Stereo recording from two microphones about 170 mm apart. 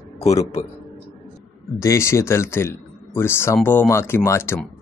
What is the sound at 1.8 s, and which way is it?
Speech, 15° left (ahead or behind).